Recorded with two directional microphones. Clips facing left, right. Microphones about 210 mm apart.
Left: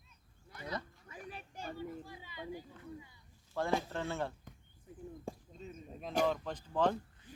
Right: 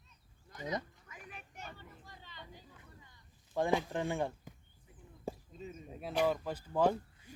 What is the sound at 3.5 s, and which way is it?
Speech, 15° right (ahead or behind).